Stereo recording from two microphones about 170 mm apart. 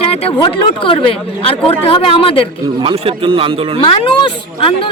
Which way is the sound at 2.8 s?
30° right (ahead or behind).